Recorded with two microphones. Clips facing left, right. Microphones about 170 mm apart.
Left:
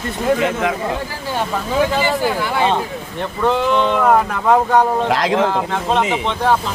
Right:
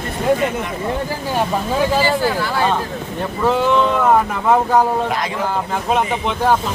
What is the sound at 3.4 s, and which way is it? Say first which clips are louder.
Speech: even; centre (ahead or behind).